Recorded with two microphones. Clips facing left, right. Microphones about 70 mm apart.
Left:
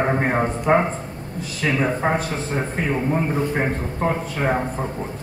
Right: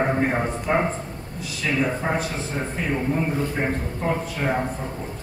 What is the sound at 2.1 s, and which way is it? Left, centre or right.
A man's voice, left.